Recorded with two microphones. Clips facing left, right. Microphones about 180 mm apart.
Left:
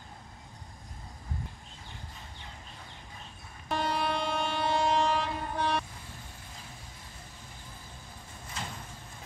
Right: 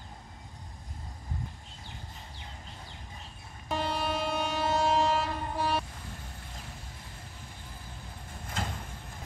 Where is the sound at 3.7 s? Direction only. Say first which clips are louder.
Left 1 dB; 5° right (ahead or behind).